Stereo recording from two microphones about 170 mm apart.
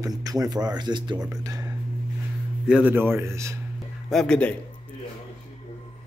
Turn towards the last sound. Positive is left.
turn(degrees=5)  # may be behind; listen again after turning